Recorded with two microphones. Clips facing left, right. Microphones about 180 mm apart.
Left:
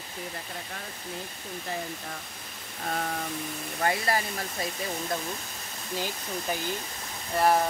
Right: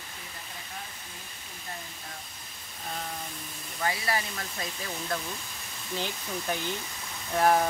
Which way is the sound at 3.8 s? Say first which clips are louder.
Left 3 dB; 45° left (ahead or behind).